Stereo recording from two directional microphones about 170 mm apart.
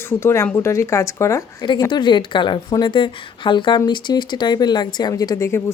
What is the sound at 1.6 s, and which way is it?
A woman's voice, 25° left (ahead or behind).